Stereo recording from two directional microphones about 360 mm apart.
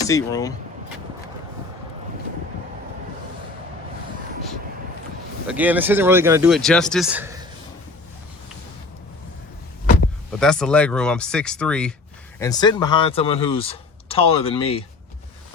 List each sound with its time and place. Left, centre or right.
0.0 s speech: centre
5.5 s speech: centre
10.4 s speech: centre